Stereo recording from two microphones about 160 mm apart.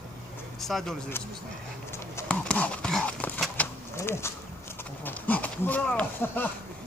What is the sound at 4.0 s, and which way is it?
Speech, 15° left (ahead or behind).